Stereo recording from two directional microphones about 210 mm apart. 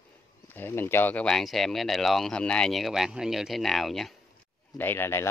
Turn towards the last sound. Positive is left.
turn(degrees=10)  # may be behind; listen again after turning